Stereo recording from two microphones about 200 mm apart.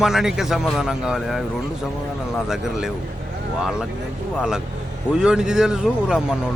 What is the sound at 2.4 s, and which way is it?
Speech, 5° right (ahead or behind).